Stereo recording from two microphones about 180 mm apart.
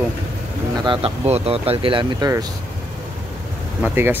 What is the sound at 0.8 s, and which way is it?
Speech, 30° right (ahead or behind).